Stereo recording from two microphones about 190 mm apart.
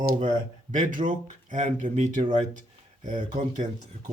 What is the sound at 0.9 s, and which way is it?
Speech, 45° right (ahead or behind).